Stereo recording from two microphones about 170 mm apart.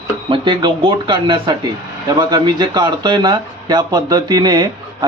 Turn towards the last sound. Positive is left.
turn(degrees=-20)  # may be behind; listen again after turning